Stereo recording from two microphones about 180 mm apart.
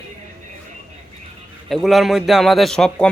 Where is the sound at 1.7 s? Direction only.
Centre (ahead or behind).